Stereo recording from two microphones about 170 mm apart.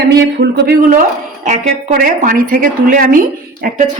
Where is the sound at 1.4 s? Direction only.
45° right (ahead or behind).